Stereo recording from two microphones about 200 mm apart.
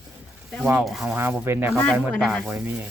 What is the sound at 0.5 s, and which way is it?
Speech, 5° right (ahead or behind).